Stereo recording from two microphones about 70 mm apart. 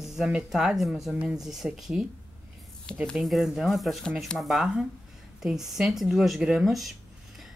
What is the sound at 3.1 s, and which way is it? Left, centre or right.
Speech, centre.